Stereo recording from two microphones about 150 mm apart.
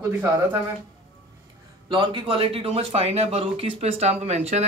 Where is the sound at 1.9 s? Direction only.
30° right (ahead or behind).